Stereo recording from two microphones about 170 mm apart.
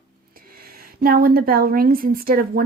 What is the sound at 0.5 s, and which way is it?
A woman's voice, 60° right (ahead or behind).